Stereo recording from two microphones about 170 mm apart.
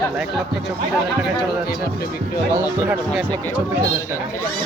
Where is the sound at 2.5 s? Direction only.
15° right (ahead or behind).